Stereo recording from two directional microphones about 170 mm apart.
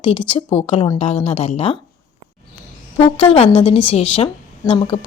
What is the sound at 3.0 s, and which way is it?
A woman's voice, 35° left (ahead or behind).